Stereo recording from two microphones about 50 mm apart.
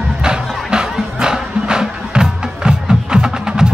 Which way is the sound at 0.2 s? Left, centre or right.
Centre.